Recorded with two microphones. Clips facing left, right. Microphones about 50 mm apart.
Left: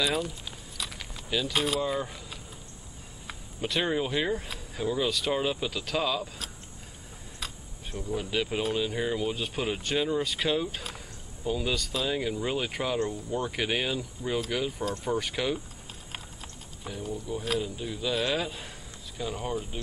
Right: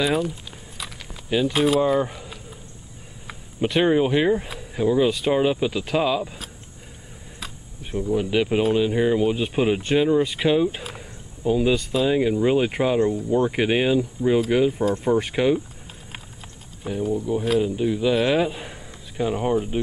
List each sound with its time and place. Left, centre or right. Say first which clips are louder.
0.2 s walk: right 7 dB; centre
1.5 s speech: right 9 dB; centre
2.0 s a sound: right 9 dB; centre
3.6 s speech: right 9 dB; right
8.1 s speech: right 9 dB; centre
16.8 s speech: right 11 dB; centre